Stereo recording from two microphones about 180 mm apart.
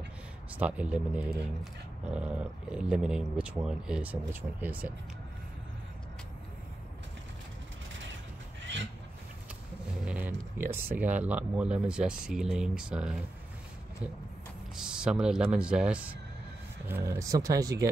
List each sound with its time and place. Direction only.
0.6 s speech: 5° right (ahead or behind)
10.0 s a sound: 10° right (ahead or behind)
11.0 s speech: 10° right (ahead or behind)
14.8 s speech: 5° right (ahead or behind); by 17.8 s 20° right (ahead or behind)